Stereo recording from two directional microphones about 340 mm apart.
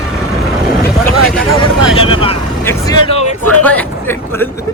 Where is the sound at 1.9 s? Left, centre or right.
Centre.